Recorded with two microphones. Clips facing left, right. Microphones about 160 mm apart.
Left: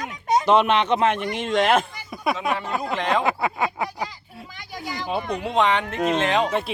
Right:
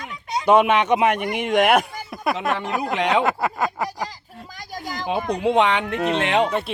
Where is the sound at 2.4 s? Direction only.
Centre (ahead or behind).